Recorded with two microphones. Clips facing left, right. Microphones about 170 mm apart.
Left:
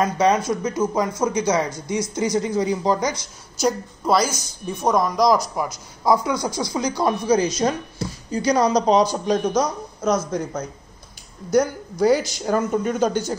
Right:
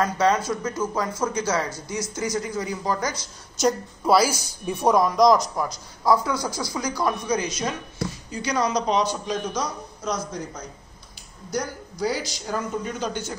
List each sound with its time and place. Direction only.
0.0 s a man's voice: 15° left (ahead or behind)
3.5 s a woman's voice: centre (ahead or behind)
5.6 s a man's voice: 15° left (ahead or behind); by 13.4 s 40° left (ahead or behind)